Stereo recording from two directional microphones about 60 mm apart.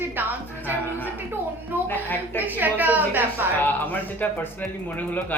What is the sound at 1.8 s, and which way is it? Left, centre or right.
Speech, left.